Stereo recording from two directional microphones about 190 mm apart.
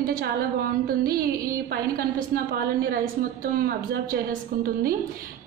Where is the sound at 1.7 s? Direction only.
50° right (ahead or behind).